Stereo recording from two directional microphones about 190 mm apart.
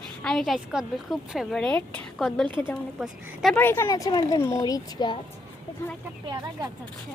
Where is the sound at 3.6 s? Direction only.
10° left (ahead or behind).